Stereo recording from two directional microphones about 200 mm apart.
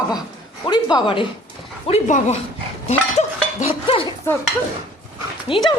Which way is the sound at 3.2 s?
30° left (ahead or behind).